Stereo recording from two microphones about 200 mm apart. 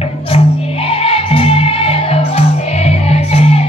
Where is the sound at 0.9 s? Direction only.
30° left (ahead or behind).